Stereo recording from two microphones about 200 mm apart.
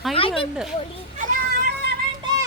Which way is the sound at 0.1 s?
25° left (ahead or behind).